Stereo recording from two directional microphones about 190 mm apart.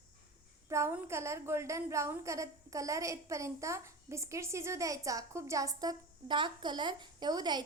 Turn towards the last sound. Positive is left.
turn(degrees=-20)  # may be behind; listen again after turning